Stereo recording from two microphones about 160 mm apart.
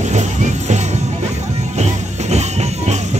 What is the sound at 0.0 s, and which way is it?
Music, 45° right (ahead or behind).